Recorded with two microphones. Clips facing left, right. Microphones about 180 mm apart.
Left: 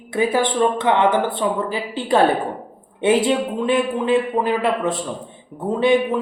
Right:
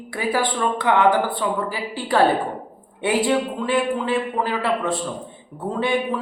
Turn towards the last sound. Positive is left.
turn(degrees=20)  # may be behind; listen again after turning